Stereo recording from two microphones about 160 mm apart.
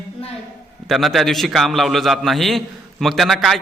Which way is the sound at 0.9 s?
Centre (ahead or behind).